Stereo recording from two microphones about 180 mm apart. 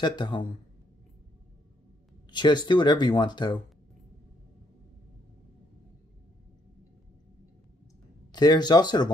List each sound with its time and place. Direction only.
0.0 s speech: 25° left (ahead or behind)
2.3 s speech: 25° left (ahead or behind)
8.3 s speech: 20° left (ahead or behind)